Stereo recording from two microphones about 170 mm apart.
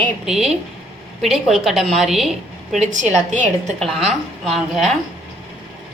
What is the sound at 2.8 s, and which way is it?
Speech, 45° right (ahead or behind).